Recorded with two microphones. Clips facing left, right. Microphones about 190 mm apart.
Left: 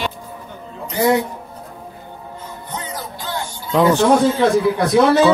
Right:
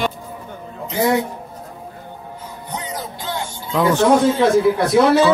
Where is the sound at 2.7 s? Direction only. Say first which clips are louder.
Right 1 dB; 20° right (ahead or behind).